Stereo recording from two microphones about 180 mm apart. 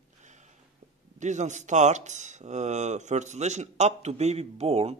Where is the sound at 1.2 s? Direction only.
40° right (ahead or behind).